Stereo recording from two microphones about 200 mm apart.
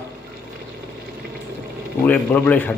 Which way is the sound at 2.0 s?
10° left (ahead or behind).